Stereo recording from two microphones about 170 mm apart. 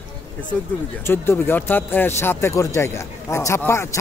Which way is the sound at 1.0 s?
15° left (ahead or behind).